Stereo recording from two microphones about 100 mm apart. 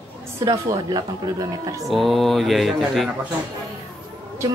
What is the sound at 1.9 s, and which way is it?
Mantra, centre (ahead or behind).